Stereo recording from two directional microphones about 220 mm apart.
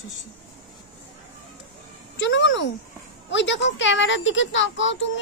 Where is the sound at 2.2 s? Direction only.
55° left (ahead or behind).